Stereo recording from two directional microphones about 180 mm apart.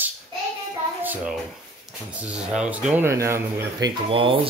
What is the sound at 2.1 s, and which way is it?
Speech, 5° right (ahead or behind).